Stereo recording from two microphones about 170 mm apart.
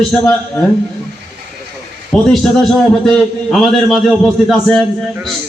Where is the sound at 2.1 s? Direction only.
Centre (ahead or behind).